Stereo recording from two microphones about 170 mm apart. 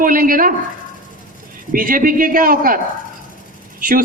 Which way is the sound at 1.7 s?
55° right (ahead or behind).